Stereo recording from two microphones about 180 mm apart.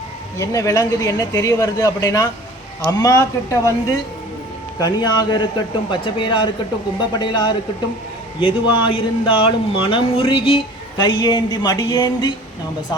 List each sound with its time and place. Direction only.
0.3 s speech: 15° left (ahead or behind)